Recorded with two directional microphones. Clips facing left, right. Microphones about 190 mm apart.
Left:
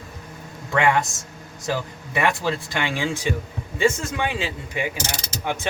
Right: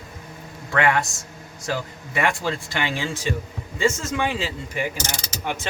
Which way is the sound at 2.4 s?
15° left (ahead or behind).